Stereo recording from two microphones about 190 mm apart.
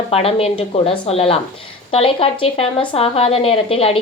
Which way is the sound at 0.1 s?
30° left (ahead or behind).